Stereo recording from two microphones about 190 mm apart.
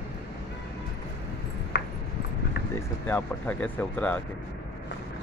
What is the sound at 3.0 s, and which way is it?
Speech, 10° left (ahead or behind).